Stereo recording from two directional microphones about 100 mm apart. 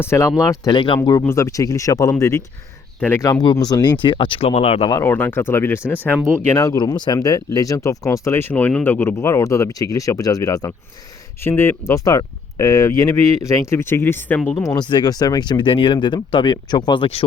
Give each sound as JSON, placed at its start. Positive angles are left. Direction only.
{"t": 0.0, "sound": "speech", "side_deg": 25}
{"t": 0.6, "sound": "speech", "side_deg": 45}
{"t": 1.3, "sound": "speech", "side_deg": 30}
{"t": 4.0, "sound": "speech", "side_deg": 55}
{"t": 4.4, "sound": "speech", "side_deg": 90}
{"t": 5.0, "sound": "speech", "side_deg": 20}
{"t": 6.5, "sound": "speech", "side_deg": 35}
{"t": 9.1, "sound": "speech", "side_deg": 30}
{"t": 11.4, "sound": "speech", "side_deg": 25}
{"t": 14.6, "sound": "speech", "side_deg": 35}
{"t": 14.8, "sound": "speech", "side_deg": 45}